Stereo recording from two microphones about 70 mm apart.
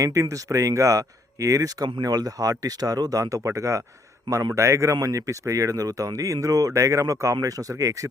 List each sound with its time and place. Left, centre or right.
0.0 s speech: right